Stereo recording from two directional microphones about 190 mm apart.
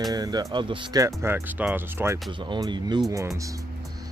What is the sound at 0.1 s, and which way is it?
Speech, 20° right (ahead or behind).